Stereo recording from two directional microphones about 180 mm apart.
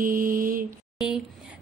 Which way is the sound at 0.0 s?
50° right (ahead or behind).